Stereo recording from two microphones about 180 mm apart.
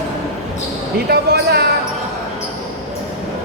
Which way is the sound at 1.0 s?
65° right (ahead or behind).